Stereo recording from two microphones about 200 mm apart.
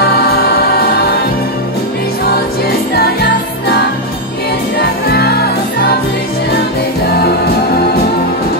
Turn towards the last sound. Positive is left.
turn(degrees=50)  # may be behind; listen again after turning